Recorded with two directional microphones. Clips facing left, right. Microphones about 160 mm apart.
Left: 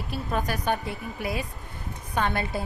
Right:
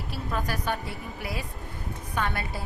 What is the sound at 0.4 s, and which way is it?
A woman's voice, 20° left (ahead or behind).